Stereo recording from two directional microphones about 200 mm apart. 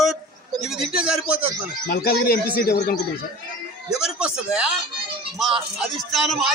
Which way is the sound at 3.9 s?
5° right (ahead or behind).